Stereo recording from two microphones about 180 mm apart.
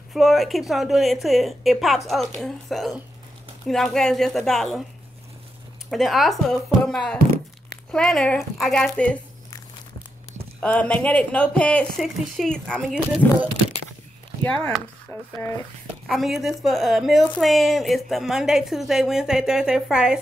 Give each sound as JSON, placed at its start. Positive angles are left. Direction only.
{"t": 0.1, "sound": "a woman's voice", "side_deg": 0}
{"t": 5.9, "sound": "a woman's voice", "side_deg": 0}
{"t": 10.6, "sound": "a woman's voice", "side_deg": 5}
{"t": 15.1, "sound": "speech", "side_deg": 15}
{"t": 16.1, "sound": "a woman's voice", "side_deg": 0}